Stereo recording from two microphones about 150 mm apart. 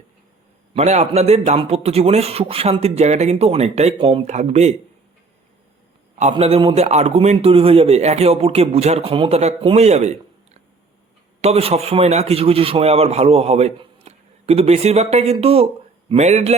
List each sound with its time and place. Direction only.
0.7 s a man's voice: 45° right (ahead or behind)
3.9 s speech: 35° right (ahead or behind)
4.3 s a man's voice: 50° right (ahead or behind)
6.4 s a man's voice: 40° right (ahead or behind)